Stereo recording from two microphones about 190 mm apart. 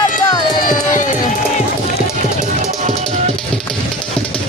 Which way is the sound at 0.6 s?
45° left (ahead or behind).